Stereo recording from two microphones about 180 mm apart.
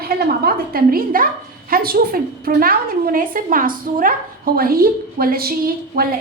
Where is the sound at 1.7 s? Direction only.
55° right (ahead or behind).